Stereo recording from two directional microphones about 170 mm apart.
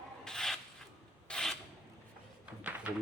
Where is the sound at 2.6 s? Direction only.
10° right (ahead or behind).